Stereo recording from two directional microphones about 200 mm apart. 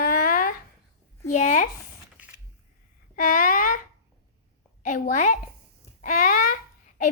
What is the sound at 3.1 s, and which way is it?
Speech, 40° left (ahead or behind).